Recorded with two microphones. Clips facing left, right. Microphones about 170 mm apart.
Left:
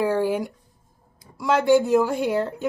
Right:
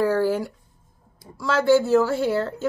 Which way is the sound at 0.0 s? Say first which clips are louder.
Right 1 dB; 15° left (ahead or behind).